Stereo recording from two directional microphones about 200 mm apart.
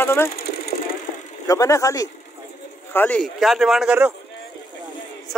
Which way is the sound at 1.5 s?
15° left (ahead or behind).